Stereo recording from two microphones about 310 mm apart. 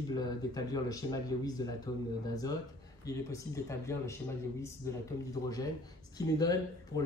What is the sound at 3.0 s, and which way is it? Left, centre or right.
Speech, centre.